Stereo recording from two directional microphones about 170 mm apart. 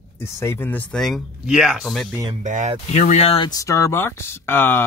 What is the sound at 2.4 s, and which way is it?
Speech, 45° right (ahead or behind).